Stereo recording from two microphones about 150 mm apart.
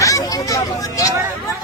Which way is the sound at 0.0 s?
25° left (ahead or behind).